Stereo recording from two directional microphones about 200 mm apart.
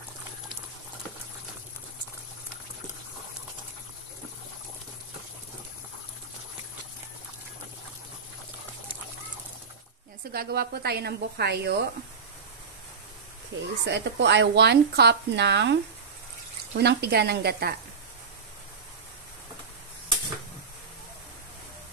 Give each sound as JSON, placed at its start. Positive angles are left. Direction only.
{"t": 10.3, "sound": "a woman's voice", "side_deg": -50}
{"t": 13.5, "sound": "speech", "side_deg": -65}